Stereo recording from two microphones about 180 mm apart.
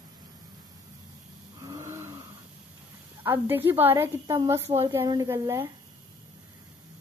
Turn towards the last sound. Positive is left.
turn(degrees=-15)  # may be behind; listen again after turning